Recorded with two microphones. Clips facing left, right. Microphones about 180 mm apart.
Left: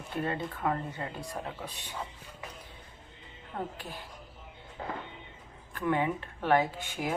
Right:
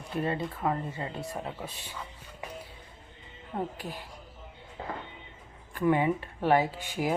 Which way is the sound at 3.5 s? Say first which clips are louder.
Right 3 dB; 25° right (ahead or behind).